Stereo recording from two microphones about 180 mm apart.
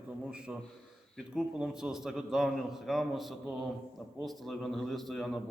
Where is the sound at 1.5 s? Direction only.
Centre (ahead or behind).